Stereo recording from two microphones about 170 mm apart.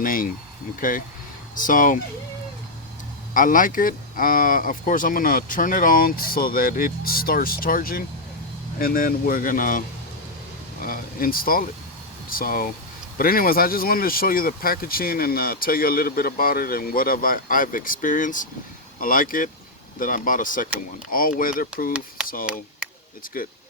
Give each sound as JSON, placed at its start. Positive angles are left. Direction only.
{"t": 0.0, "sound": "speech", "side_deg": 55}
{"t": 3.3, "sound": "speech", "side_deg": 50}
{"t": 10.8, "sound": "speech", "side_deg": 55}
{"t": 23.3, "sound": "speech", "side_deg": 55}